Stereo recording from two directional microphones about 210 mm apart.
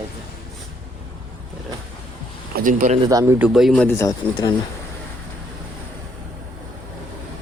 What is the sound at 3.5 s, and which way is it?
Speech, centre (ahead or behind).